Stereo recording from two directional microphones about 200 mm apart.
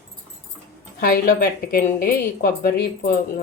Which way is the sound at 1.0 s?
50° left (ahead or behind).